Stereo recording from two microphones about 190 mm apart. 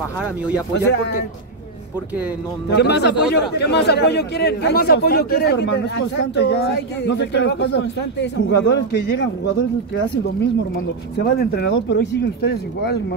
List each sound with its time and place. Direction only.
0.7 s a man's voice: 65° left (ahead or behind)
2.7 s a man's voice: 60° left (ahead or behind)
11.3 s a man's voice: 65° left (ahead or behind)